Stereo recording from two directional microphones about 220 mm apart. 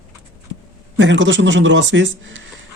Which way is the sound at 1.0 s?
55° right (ahead or behind).